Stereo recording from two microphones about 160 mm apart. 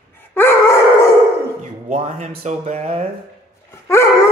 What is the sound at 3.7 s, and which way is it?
Dog, 15° left (ahead or behind).